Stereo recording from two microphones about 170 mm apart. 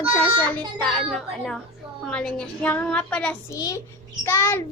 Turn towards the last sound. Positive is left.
turn(degrees=15)  # may be behind; listen again after turning